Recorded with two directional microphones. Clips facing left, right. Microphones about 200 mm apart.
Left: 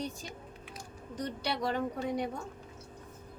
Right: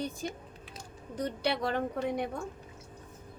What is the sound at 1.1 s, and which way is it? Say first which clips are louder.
A woman's voice: right 4 dB; 60° right (ahead or behind).